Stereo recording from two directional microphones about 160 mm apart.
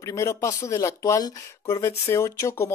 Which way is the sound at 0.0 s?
20° left (ahead or behind).